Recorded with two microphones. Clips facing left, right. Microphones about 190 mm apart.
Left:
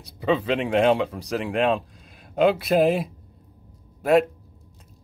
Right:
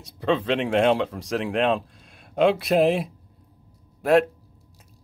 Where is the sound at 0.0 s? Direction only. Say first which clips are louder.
Even; centre (ahead or behind).